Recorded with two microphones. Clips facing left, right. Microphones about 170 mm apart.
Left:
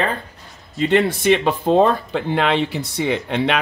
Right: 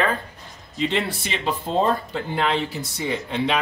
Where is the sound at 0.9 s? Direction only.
60° left (ahead or behind).